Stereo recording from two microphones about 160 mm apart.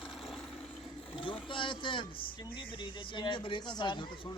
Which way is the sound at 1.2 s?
30° left (ahead or behind).